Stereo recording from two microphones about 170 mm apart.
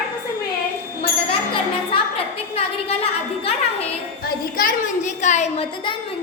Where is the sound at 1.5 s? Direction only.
35° left (ahead or behind).